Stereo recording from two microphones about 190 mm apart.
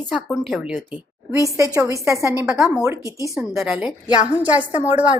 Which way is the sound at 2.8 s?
15° right (ahead or behind).